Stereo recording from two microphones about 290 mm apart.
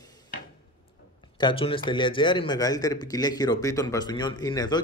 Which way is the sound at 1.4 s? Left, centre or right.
Centre.